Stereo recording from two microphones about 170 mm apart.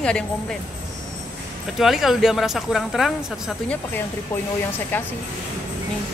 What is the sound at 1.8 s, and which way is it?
Speech, centre (ahead or behind).